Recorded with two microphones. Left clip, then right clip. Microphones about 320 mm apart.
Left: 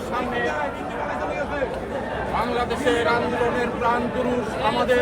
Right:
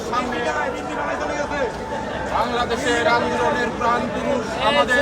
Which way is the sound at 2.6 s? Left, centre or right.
Centre.